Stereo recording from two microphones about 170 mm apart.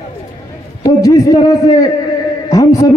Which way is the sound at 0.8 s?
20° left (ahead or behind).